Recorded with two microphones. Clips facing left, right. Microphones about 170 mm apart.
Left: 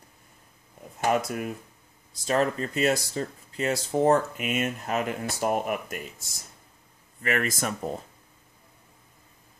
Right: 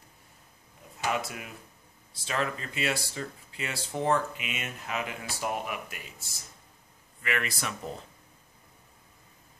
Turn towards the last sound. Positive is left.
turn(degrees=45)  # may be behind; listen again after turning